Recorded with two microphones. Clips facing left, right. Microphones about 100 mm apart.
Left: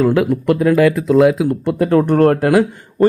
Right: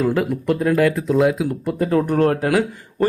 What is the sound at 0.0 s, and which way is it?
Speech, centre (ahead or behind).